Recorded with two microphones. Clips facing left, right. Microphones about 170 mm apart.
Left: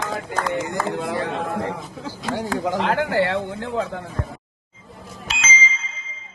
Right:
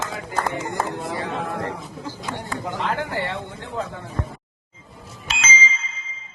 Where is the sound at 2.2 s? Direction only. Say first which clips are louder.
Left 8 dB; 90° left.